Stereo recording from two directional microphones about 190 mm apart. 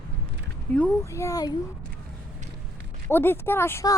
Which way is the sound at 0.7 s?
10° left (ahead or behind).